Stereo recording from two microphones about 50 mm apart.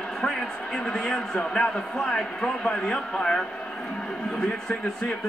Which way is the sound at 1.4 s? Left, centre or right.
Centre.